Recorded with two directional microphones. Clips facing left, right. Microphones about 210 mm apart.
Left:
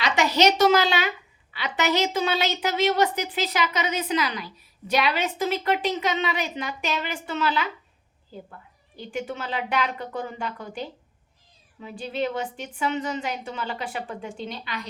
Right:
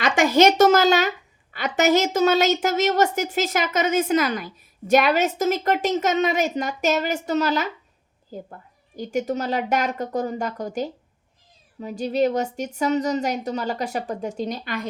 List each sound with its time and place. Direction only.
0.0 s a woman's voice: 50° right (ahead or behind)